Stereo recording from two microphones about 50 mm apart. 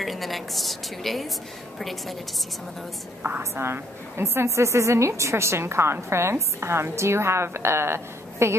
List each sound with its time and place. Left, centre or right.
0.0 s a woman's voice: centre
3.5 s a woman's voice: right